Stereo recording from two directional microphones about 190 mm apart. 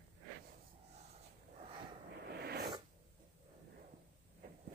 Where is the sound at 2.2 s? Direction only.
60° right (ahead or behind).